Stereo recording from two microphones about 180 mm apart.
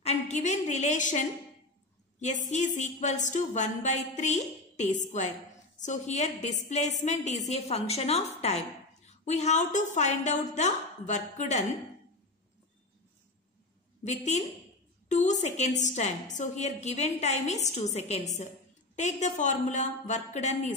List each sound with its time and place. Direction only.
0.0 s a woman's voice: 40° left (ahead or behind)
14.0 s a woman's voice: 40° left (ahead or behind)